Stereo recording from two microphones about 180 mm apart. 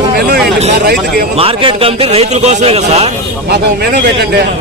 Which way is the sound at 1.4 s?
30° right (ahead or behind).